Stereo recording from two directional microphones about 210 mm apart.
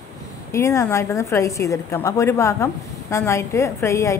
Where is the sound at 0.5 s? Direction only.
15° left (ahead or behind).